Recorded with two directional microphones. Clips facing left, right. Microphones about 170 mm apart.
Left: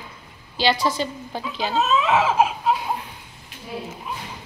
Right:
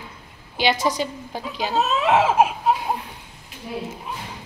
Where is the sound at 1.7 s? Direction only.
55° right (ahead or behind).